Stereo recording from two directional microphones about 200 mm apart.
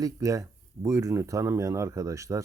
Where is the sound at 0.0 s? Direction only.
15° right (ahead or behind).